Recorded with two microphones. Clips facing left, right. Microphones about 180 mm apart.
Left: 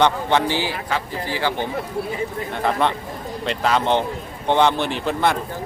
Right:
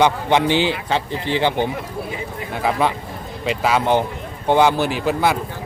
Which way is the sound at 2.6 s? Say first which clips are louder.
Right 1 dB; 5° right (ahead or behind).